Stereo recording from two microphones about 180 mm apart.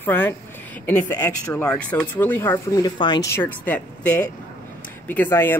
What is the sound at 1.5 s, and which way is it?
Speech, 10° left (ahead or behind).